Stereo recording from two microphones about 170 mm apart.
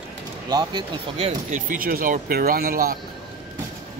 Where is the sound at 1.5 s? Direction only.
55° right (ahead or behind).